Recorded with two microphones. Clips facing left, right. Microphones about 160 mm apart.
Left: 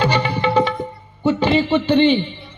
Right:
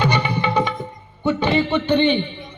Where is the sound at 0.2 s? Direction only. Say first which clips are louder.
Left 3 dB; 15° right (ahead or behind).